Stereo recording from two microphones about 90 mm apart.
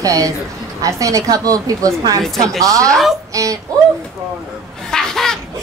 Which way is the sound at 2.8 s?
5° left (ahead or behind).